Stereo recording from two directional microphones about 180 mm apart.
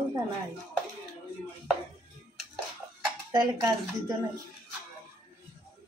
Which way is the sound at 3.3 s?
20° right (ahead or behind).